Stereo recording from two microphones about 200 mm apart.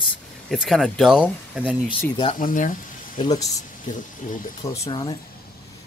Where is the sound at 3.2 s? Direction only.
20° left (ahead or behind).